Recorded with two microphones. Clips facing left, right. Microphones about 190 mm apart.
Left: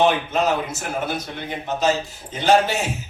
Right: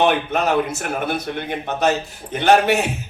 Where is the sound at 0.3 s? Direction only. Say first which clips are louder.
Right 2 dB; 60° right (ahead or behind).